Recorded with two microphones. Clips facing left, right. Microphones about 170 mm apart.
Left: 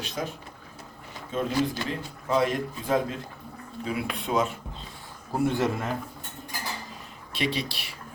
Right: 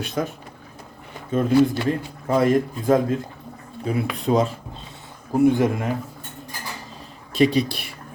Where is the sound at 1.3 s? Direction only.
55° right (ahead or behind).